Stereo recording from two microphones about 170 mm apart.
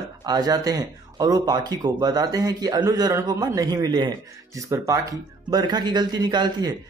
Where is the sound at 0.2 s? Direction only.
25° right (ahead or behind).